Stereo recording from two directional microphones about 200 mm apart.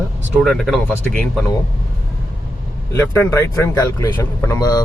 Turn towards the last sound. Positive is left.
turn(degrees=20)  # may be behind; listen again after turning